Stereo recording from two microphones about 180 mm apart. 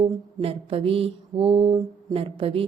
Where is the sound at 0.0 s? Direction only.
30° right (ahead or behind).